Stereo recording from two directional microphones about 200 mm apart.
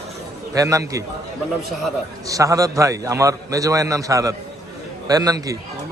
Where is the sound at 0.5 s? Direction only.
15° right (ahead or behind).